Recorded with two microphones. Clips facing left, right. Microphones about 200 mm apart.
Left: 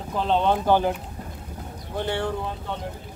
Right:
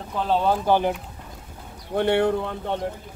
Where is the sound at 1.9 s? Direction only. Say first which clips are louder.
Right 7 dB; 60° right (ahead or behind).